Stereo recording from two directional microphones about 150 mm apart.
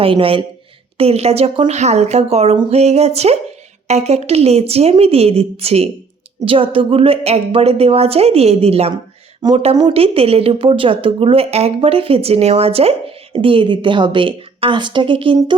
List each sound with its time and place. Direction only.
0.0 s a woman's voice: 40° right (ahead or behind)
9.4 s speech: 25° right (ahead or behind)
9.9 s speech: 40° right (ahead or behind)